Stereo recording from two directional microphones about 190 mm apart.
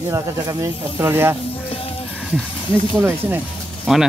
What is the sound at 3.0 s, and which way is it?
Speech, 10° right (ahead or behind).